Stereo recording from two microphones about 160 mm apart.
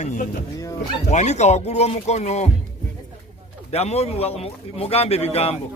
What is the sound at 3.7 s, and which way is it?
A man's voice, 40° left (ahead or behind).